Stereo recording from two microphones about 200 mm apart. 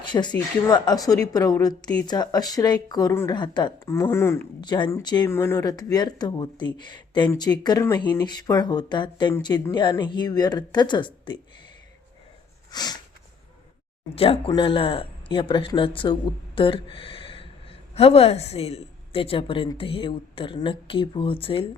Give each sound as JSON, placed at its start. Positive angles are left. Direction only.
{"t": 0.0, "sound": "a woman's voice", "side_deg": 20}
{"t": 12.7, "sound": "a woman's voice", "side_deg": 20}
{"t": 14.2, "sound": "a woman's voice", "side_deg": 25}